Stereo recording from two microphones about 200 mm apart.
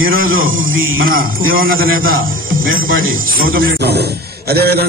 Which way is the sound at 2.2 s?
90° right.